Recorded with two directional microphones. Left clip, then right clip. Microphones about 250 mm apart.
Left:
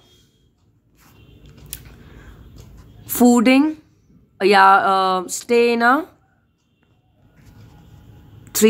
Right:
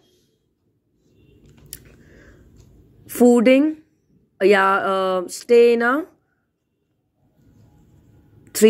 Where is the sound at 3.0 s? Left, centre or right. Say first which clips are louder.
Right 1 dB; centre.